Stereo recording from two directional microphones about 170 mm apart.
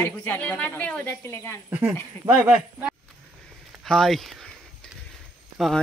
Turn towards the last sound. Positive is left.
turn(degrees=0)  # may be behind; listen again after turning